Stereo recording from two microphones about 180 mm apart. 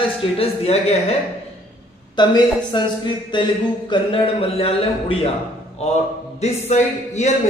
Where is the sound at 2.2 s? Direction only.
25° left (ahead or behind).